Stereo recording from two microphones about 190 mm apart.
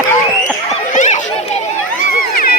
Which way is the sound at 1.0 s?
40° left (ahead or behind).